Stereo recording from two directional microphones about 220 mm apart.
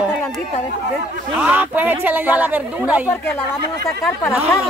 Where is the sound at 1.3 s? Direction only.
5° right (ahead or behind).